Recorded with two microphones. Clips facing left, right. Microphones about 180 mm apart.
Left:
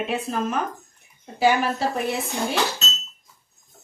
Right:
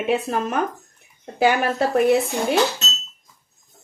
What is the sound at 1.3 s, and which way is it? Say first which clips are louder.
Speech: right 2 dB; 60° right (ahead or behind).